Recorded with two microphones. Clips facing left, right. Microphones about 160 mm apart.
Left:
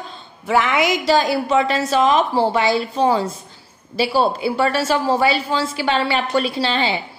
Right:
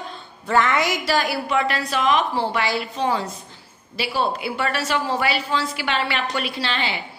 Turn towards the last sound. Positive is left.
turn(degrees=30)  # may be behind; listen again after turning